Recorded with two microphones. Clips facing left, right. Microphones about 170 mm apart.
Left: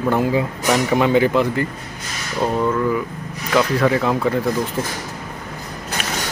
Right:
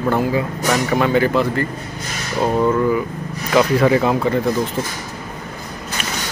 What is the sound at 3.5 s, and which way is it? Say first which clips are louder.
Speech: right 3 dB; 5° right (ahead or behind).